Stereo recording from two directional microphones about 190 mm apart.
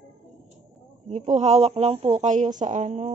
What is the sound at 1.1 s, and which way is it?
Speech, 35° right (ahead or behind).